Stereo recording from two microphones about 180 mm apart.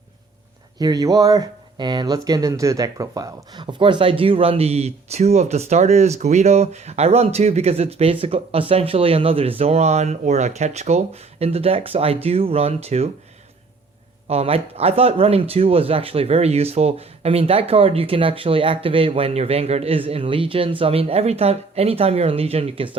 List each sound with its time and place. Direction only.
0.8 s speech: 20° right (ahead or behind)
14.3 s speech: 35° right (ahead or behind)